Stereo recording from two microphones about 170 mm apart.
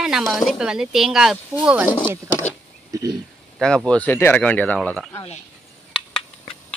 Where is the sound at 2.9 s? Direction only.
20° right (ahead or behind).